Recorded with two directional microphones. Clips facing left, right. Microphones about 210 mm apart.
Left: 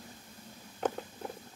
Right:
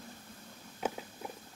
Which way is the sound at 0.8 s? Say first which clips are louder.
Left 3 dB; 10° right (ahead or behind).